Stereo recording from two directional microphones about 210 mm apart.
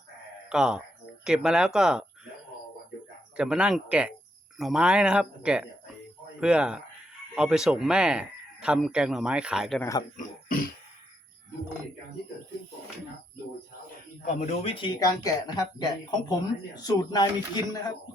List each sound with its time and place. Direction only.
0.5 s speech: 5° right (ahead or behind)
3.3 s speech: 5° right (ahead or behind)
10.2 s cough: 40° left (ahead or behind)
14.3 s speech: 30° left (ahead or behind)